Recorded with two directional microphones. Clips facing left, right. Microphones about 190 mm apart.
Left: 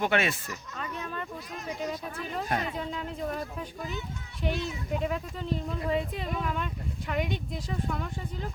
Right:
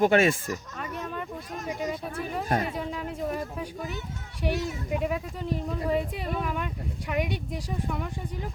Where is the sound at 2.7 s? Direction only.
10° right (ahead or behind).